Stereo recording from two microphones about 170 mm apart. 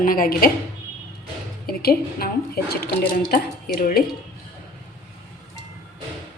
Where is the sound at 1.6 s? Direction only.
60° left (ahead or behind).